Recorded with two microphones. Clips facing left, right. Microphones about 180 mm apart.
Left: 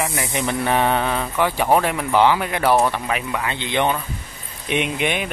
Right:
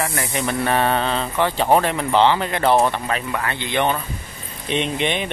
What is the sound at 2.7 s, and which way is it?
Speech, 20° right (ahead or behind).